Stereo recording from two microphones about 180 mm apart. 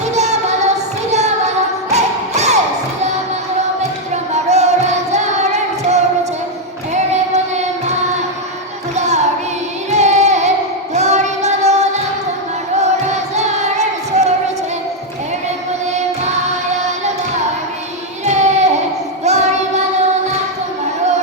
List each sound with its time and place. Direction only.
0.1 s child singing: 40° right (ahead or behind)
1.1 s music: 40° right (ahead or behind)
4.1 s music: 40° right (ahead or behind)
5.1 s singing: 40° right (ahead or behind)
6.9 s child singing: 40° right (ahead or behind)
9.0 s music: 40° right (ahead or behind)
9.9 s carnatic music: 40° right (ahead or behind)
10.9 s child singing: 40° right (ahead or behind)
13.3 s child singing: 40° right (ahead or behind)
18.3 s child singing: 40° right (ahead or behind)